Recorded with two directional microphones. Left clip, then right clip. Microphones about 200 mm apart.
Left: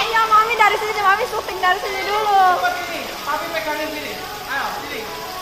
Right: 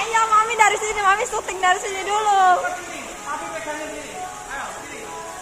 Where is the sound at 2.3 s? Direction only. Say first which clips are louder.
Left 2 dB; 25° right (ahead or behind).